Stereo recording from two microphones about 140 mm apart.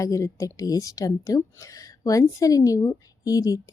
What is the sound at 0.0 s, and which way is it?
Speech, 20° left (ahead or behind).